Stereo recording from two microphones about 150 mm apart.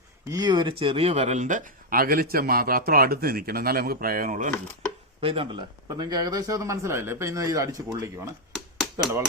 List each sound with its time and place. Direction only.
0.3 s speech: 25° right (ahead or behind); by 4.5 s 60° right (ahead or behind)
5.2 s speech: 40° right (ahead or behind)
8.5 s a sound: centre (ahead or behind)